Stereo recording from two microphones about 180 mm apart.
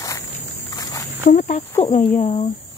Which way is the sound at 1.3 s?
45° left (ahead or behind).